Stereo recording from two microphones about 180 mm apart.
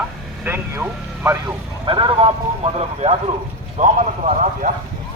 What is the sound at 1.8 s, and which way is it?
Speech, 30° right (ahead or behind).